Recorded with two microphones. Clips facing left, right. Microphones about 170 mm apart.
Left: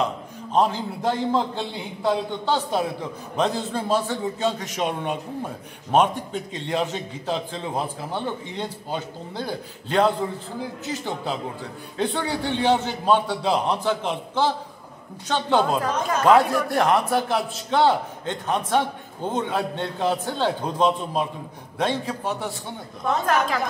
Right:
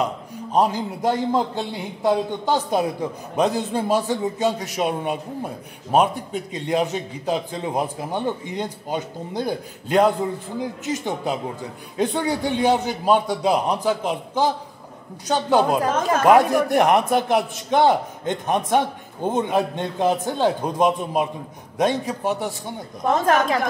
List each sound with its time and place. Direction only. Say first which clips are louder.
0.0 s a man's voice: right 1 dB; 10° right (ahead or behind)